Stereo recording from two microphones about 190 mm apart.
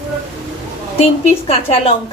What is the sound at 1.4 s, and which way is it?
Speech, 30° left (ahead or behind).